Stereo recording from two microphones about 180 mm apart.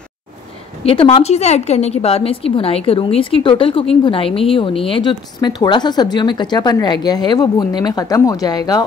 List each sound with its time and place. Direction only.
0.8 s speech: 30° left (ahead or behind)